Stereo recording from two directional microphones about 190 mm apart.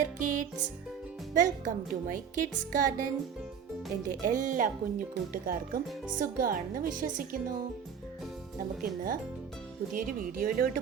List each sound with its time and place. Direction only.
0.0 s music: 40° right (ahead or behind)
1.3 s speech: 45° right (ahead or behind)
9.9 s speech: 45° right (ahead or behind)